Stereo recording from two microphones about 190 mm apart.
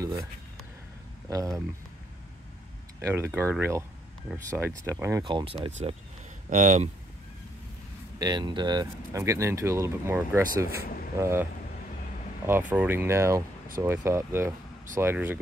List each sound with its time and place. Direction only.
0.0 s a sound: 20° right (ahead or behind)
3.0 s speech: 15° right (ahead or behind)
5.2 s speech: 25° right (ahead or behind)
8.2 s speech: 20° right (ahead or behind)
12.4 s speech: 10° right (ahead or behind)